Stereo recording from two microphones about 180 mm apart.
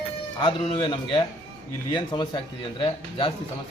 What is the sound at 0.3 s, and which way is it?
A man's voice, 30° left (ahead or behind).